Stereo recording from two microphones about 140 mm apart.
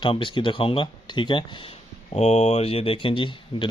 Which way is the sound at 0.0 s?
35° left (ahead or behind).